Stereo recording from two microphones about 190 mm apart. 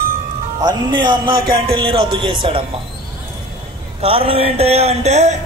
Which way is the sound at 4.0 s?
30° right (ahead or behind).